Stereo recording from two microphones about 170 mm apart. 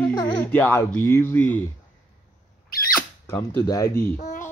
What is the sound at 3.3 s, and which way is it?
Mantra, 15° left (ahead or behind).